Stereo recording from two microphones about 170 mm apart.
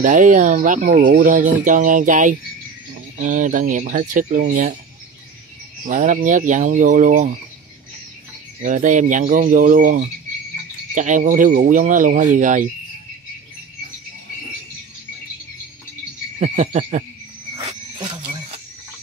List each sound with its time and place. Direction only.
0.0 s speech: 50° right (ahead or behind)
5.9 s speech: 50° right (ahead or behind)
8.6 s speech: 45° right (ahead or behind)
16.3 s speech: 40° right (ahead or behind)
17.6 s a sound: 30° right (ahead or behind)